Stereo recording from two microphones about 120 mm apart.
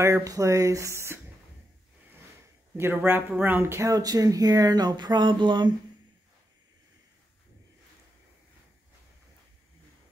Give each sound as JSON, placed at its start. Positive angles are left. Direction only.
{"t": 0.0, "sound": "speech", "side_deg": -25}
{"t": 2.7, "sound": "speech", "side_deg": -15}